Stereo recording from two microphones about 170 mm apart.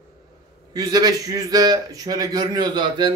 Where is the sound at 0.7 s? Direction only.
20° right (ahead or behind).